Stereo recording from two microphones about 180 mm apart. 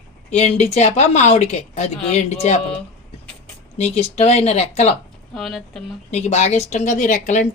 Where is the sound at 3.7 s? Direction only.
35° left (ahead or behind).